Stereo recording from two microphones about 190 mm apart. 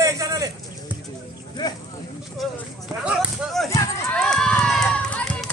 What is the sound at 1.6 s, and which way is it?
Speech, 20° left (ahead or behind).